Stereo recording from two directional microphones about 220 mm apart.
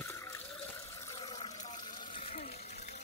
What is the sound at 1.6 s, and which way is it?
Water, 35° left (ahead or behind).